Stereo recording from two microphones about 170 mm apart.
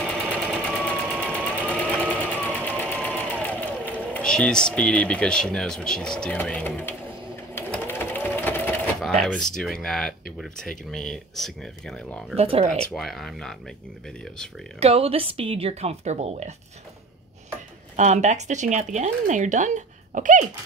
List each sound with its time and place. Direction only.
0.0 s sewing machine: 5° left (ahead or behind)
2.8 s speech: 10° left (ahead or behind)
7.5 s sewing machine: 15° left (ahead or behind)
9.6 s speech: 5° left (ahead or behind)
12.4 s a woman's voice: 35° right (ahead or behind)
12.9 s speech: centre (ahead or behind)
14.8 s a woman's voice: 35° right (ahead or behind)
17.9 s speech: 45° right (ahead or behind)